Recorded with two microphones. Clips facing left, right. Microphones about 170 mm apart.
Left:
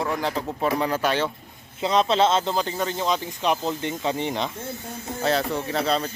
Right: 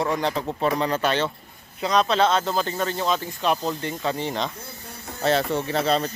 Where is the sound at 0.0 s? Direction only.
5° left (ahead or behind).